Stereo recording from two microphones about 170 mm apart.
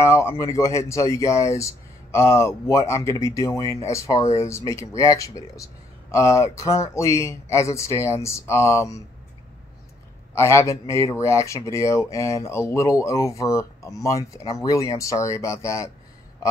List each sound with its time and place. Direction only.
0.0 s speech: 15° left (ahead or behind)
10.3 s speech: 15° left (ahead or behind)